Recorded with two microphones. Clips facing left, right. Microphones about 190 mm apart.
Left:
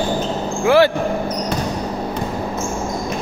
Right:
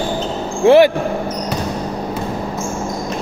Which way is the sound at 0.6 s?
20° right (ahead or behind).